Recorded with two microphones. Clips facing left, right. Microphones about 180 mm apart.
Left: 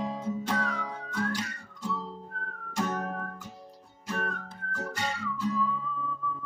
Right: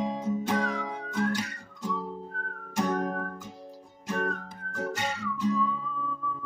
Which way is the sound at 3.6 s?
Centre (ahead or behind).